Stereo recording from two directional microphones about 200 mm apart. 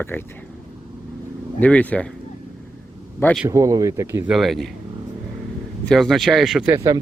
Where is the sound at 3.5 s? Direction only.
15° right (ahead or behind).